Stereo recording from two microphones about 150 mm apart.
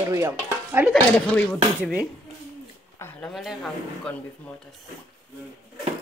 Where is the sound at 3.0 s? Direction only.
10° left (ahead or behind).